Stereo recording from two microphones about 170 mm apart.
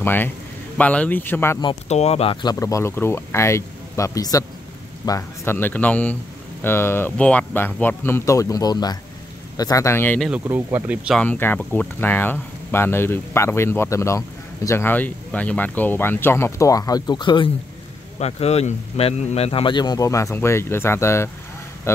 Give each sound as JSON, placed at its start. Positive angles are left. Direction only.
{"t": 0.0, "sound": "a man's voice", "side_deg": 10}
{"t": 1.9, "sound": "speech", "side_deg": 40}
{"t": 2.4, "sound": "speech", "side_deg": 20}
{"t": 10.3, "sound": "speech", "side_deg": -10}
{"t": 11.1, "sound": "speech", "side_deg": 10}
{"t": 18.2, "sound": "a man's voice", "side_deg": 40}